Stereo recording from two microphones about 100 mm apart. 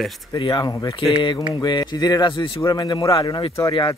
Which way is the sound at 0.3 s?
50° left (ahead or behind).